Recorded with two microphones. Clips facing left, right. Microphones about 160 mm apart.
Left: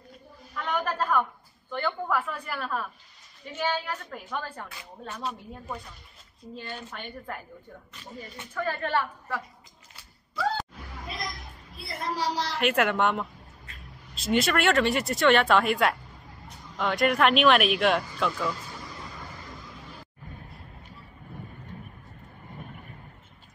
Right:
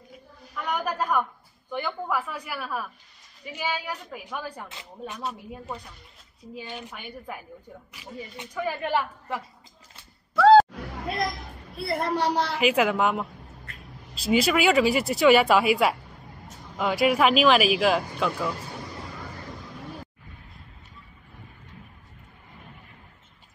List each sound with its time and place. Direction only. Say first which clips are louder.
0.6 s a sound: right 1 dB; 10° right (ahead or behind)
1.7 s a woman's voice: even; 10° right (ahead or behind)
6.5 s speech: right 1 dB; 15° right (ahead or behind)
10.3 s music: right 15 dB; 75° right (ahead or behind)
11.7 s a woman's voice: right 7 dB; 60° right (ahead or behind)
12.5 s speech: right 1 dB; centre (ahead or behind)